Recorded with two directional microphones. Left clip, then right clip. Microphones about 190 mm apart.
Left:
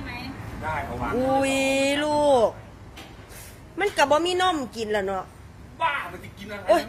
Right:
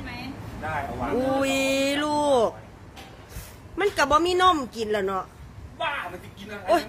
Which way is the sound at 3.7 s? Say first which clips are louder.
Even; 20° right (ahead or behind).